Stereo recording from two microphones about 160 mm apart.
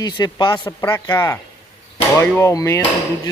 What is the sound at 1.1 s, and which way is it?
Speech, 30° left (ahead or behind).